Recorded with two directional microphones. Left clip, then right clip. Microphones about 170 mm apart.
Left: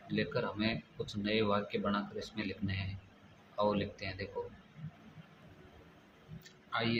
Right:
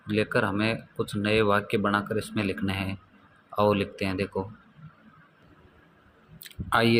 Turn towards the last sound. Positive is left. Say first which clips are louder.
# right 13 dB
turn(degrees=-50)  # may be behind; listen again after turning